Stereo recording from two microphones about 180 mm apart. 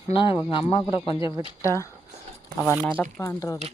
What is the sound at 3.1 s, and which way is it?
Speech, 15° left (ahead or behind).